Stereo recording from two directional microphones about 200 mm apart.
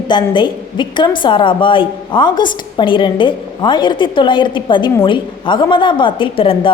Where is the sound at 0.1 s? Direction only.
25° left (ahead or behind).